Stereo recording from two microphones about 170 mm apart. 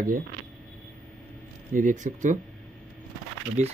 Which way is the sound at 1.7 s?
50° right (ahead or behind).